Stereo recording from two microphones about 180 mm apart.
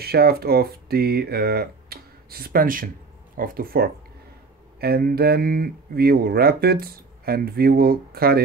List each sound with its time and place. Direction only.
0.0 s speech: 60° right (ahead or behind)